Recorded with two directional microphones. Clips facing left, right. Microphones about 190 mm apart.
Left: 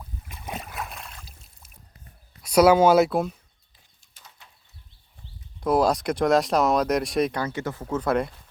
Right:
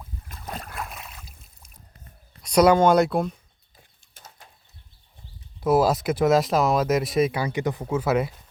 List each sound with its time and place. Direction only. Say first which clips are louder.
0.3 s splash: left 1 dB; 10° left (ahead or behind)
2.4 s speech: even; 5° left (ahead or behind)
4.1 s bird: right 3 dB; 45° right (ahead or behind)
5.5 s speech: right 1 dB; 5° right (ahead or behind)